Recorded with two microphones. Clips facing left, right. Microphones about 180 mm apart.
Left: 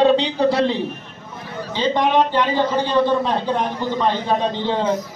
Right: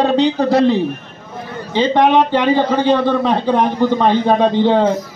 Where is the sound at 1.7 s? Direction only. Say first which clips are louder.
Right 5 dB; 60° right (ahead or behind).